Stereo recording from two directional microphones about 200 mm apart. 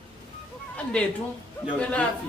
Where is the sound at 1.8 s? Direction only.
5° left (ahead or behind).